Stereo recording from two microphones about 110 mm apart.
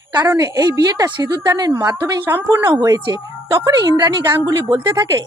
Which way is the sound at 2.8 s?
35° right (ahead or behind).